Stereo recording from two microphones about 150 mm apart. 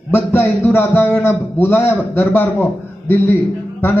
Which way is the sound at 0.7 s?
15° left (ahead or behind).